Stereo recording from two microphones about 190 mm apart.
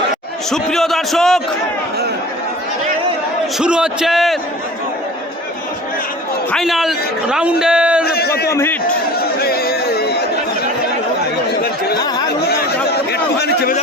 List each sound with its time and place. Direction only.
0.5 s a man's voice: centre (ahead or behind)
3.6 s a man's voice: 5° right (ahead or behind)
6.5 s a man's voice: centre (ahead or behind)
8.0 s a man's voice: 55° left (ahead or behind)
8.4 s a man's voice: 10° left (ahead or behind)
9.1 s chatter: 55° left (ahead or behind)
12.5 s chatter: 60° left (ahead or behind)